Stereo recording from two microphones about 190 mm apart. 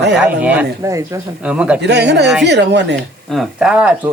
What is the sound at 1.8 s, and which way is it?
Speech, 65° right (ahead or behind).